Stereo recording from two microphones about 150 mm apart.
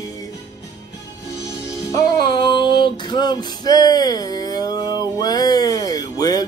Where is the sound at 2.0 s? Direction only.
30° left (ahead or behind).